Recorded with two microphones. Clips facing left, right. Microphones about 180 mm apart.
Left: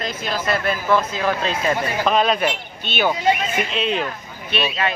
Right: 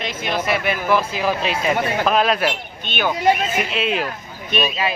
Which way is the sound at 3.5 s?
5° right (ahead or behind).